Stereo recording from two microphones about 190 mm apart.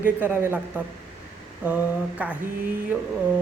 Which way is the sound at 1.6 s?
10° right (ahead or behind).